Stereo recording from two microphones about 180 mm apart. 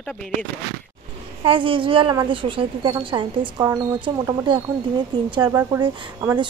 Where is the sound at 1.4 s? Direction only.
30° right (ahead or behind).